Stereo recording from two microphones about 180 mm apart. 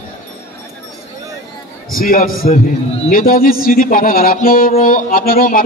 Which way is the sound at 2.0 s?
50° left (ahead or behind).